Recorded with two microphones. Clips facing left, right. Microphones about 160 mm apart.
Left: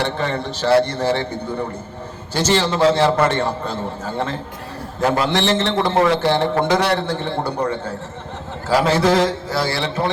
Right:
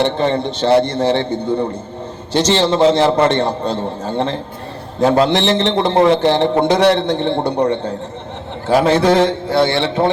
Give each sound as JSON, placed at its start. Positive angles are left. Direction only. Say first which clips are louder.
{"t": 0.0, "sound": "a man's voice", "louder": "right 6 dB", "side_deg": -20}
{"t": 2.5, "sound": "a man's voice", "louder": "right 3 dB", "side_deg": -25}